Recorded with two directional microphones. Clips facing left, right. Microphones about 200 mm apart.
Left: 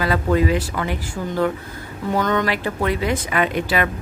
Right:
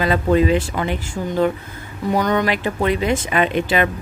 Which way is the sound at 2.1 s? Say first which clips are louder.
Right 2 dB; 15° right (ahead or behind).